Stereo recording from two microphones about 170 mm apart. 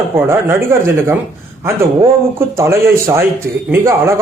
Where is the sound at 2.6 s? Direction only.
15° right (ahead or behind).